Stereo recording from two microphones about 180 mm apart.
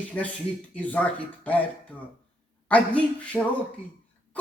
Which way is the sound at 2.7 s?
5° left (ahead or behind).